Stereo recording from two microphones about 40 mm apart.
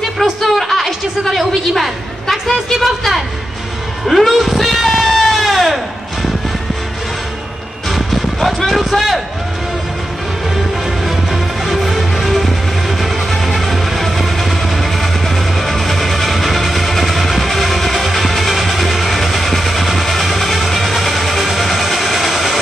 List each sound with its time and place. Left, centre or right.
0.2 s a sound: centre
4.1 s music: centre
7.9 s music: centre
11.1 s music: centre